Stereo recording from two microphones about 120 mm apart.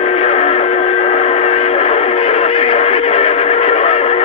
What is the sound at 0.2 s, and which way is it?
Vehicle, 60° left (ahead or behind).